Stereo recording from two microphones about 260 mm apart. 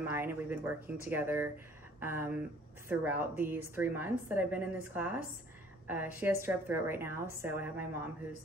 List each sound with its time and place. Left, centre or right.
0.0 s a woman's voice: centre